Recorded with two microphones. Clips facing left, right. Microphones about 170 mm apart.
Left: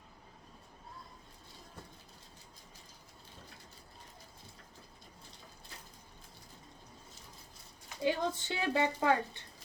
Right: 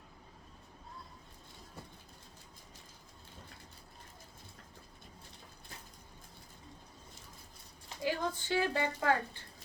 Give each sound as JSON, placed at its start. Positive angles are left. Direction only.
{"t": 8.0, "sound": "a woman's voice", "side_deg": 25}